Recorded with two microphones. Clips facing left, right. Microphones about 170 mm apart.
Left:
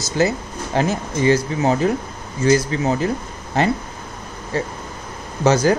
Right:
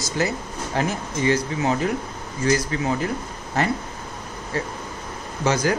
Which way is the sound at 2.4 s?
25° left (ahead or behind).